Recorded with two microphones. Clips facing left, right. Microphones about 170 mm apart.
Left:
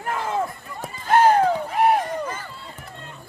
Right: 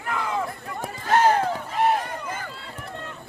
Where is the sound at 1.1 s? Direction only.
55° left (ahead or behind).